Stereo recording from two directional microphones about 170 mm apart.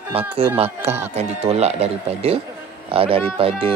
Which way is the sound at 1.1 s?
40° right (ahead or behind).